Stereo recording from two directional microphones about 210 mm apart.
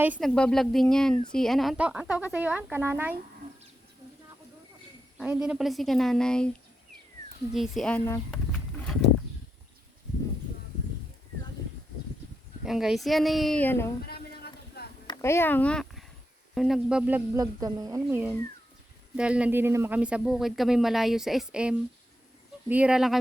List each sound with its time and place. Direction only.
0.0 s speech: 5° right (ahead or behind)
5.2 s speech: 5° right (ahead or behind)
7.5 s speech: centre (ahead or behind)
12.6 s speech: centre (ahead or behind)
14.1 s a sound: 50° left (ahead or behind)
15.0 s speech: 15° left (ahead or behind); by 23.1 s 5° right (ahead or behind)